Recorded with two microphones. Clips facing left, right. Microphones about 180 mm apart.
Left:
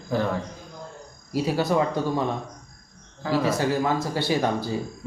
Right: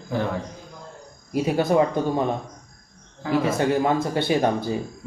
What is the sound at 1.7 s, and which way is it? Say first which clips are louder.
Speech: right 3 dB; 20° right (ahead or behind).